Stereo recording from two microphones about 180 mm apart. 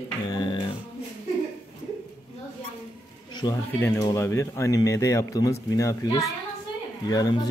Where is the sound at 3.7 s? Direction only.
10° left (ahead or behind).